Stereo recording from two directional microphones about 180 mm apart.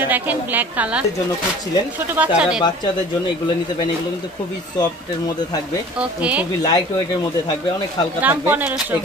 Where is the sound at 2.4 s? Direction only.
5° right (ahead or behind).